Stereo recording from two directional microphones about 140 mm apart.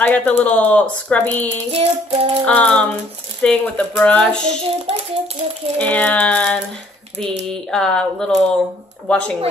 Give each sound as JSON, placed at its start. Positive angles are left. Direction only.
{"t": 0.0, "sound": "speech", "side_deg": 10}
{"t": 1.7, "sound": "child singing", "side_deg": -45}
{"t": 2.4, "sound": "speech", "side_deg": 10}
{"t": 4.4, "sound": "child singing", "side_deg": -40}
{"t": 5.8, "sound": "speech", "side_deg": 10}
{"t": 7.7, "sound": "speech", "side_deg": 5}